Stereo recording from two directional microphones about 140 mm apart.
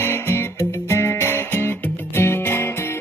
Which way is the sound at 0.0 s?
15° left (ahead or behind).